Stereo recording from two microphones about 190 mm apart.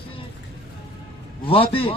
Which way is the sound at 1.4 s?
30° left (ahead or behind).